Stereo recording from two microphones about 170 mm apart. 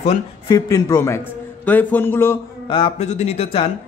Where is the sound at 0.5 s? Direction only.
20° left (ahead or behind).